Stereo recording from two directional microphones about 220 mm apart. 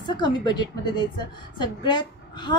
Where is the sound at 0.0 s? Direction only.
20° left (ahead or behind).